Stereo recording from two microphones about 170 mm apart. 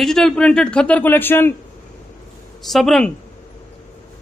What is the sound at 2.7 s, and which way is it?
Speech, centre (ahead or behind).